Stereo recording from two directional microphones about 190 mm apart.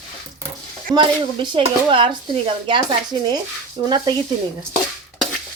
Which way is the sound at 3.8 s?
25° right (ahead or behind).